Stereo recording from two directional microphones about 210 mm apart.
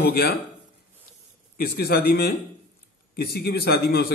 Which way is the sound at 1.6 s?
45° left (ahead or behind).